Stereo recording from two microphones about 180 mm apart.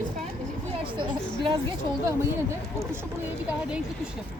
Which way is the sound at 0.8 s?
25° right (ahead or behind).